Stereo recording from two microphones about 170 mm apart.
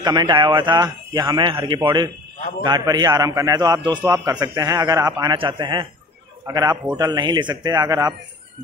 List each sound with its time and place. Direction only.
0.0 s a man's voice: 25° right (ahead or behind)